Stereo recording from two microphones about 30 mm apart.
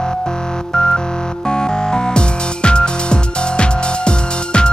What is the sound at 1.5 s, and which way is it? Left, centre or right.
Music, left.